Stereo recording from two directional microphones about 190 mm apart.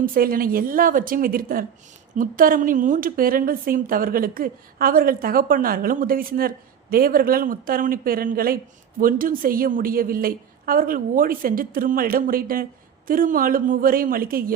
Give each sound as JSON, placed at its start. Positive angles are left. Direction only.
{"t": 0.0, "sound": "a woman's voice", "side_deg": -50}